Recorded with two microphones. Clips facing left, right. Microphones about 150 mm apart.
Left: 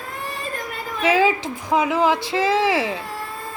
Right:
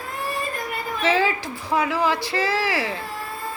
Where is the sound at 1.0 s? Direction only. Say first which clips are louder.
Left 4 dB; 10° left (ahead or behind).